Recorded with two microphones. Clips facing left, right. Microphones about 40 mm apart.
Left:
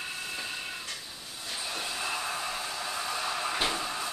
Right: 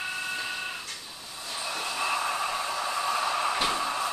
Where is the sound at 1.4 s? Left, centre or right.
Centre.